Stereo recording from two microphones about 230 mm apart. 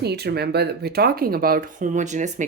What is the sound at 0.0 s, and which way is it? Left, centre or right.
Speech, right.